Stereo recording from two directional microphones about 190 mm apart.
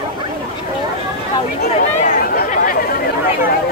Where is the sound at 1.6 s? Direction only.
40° left (ahead or behind).